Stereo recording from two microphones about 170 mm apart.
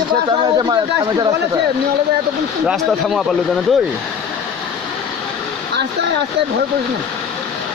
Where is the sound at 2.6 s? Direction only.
Centre (ahead or behind).